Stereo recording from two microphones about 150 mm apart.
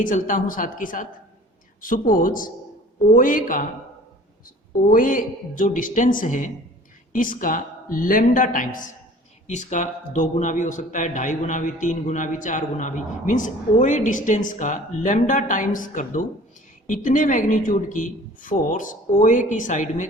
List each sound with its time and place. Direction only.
0.0 s a man's voice: 60° left (ahead or behind)
4.9 s a man's voice: 65° left (ahead or behind)